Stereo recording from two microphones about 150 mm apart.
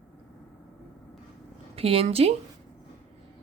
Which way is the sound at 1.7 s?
40° right (ahead or behind).